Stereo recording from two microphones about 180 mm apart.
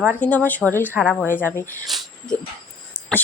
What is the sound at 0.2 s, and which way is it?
Speech, 10° left (ahead or behind).